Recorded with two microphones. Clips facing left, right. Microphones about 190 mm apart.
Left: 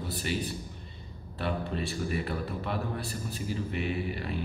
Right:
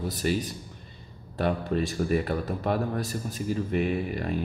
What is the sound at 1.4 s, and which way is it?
A man's voice, 45° right (ahead or behind).